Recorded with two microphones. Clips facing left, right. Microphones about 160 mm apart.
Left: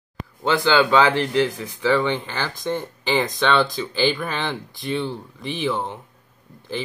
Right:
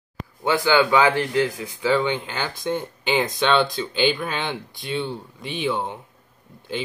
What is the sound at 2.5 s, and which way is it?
Speech, centre (ahead or behind).